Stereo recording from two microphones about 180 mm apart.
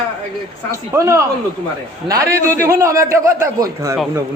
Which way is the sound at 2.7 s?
15° right (ahead or behind).